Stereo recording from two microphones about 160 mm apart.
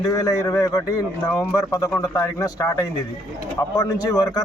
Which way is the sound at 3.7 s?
20° left (ahead or behind).